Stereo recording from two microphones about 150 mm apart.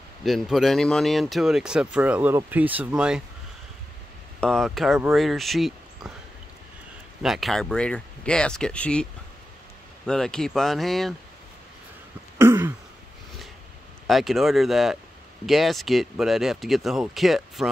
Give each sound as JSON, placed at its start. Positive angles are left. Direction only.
{"t": 0.2, "sound": "speech", "side_deg": 0}
{"t": 4.4, "sound": "speech", "side_deg": 5}
{"t": 7.2, "sound": "speech", "side_deg": 0}
{"t": 10.0, "sound": "speech", "side_deg": 5}
{"t": 12.4, "sound": "throat clearing", "side_deg": -15}
{"t": 14.0, "sound": "speech", "side_deg": 0}